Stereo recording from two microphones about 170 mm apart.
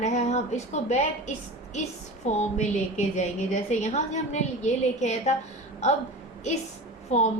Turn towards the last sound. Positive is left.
turn(degrees=40)  # may be behind; listen again after turning